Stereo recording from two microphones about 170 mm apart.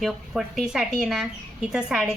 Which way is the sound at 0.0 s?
Centre (ahead or behind).